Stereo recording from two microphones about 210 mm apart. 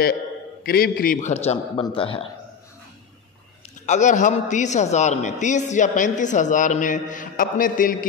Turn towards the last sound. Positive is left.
turn(degrees=40)  # may be behind; listen again after turning